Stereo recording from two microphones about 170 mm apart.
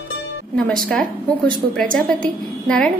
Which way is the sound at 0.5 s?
5° left (ahead or behind).